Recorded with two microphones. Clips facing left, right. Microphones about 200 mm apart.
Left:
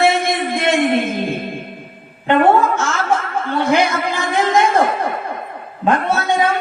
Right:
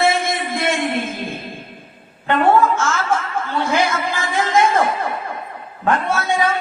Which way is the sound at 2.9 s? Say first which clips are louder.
Left 2 dB; 60° left (ahead or behind).